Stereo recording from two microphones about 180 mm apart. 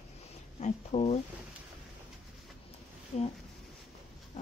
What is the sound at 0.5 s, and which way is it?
Speech, 40° left (ahead or behind).